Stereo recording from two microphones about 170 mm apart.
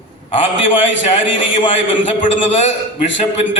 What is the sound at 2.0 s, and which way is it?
A man's voice, 40° left (ahead or behind).